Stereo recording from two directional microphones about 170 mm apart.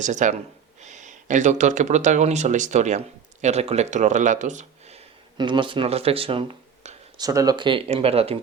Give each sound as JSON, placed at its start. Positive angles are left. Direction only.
{"t": 0.0, "sound": "speech", "side_deg": -45}
{"t": 5.4, "sound": "speech", "side_deg": -30}
{"t": 7.2, "sound": "speech", "side_deg": -20}